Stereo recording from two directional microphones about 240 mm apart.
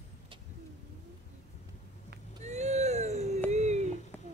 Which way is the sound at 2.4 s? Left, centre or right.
Right.